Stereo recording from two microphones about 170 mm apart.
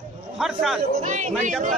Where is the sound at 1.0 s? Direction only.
45° right (ahead or behind).